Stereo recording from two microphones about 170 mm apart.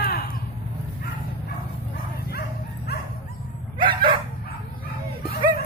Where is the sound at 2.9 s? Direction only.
70° left (ahead or behind).